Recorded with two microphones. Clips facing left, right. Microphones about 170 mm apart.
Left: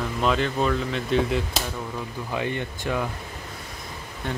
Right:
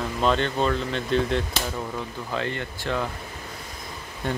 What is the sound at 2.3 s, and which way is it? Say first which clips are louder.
Speech: left 1 dB; 15° left (ahead or behind).